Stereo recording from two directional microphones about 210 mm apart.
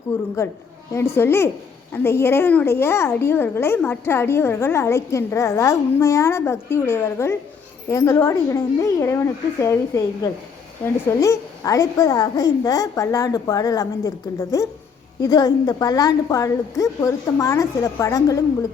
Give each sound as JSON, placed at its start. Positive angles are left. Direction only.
{"t": 0.1, "sound": "speech", "side_deg": 10}